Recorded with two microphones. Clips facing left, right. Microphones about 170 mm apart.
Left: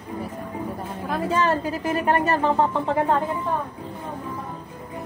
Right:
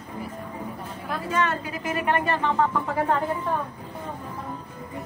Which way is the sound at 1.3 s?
35° left (ahead or behind).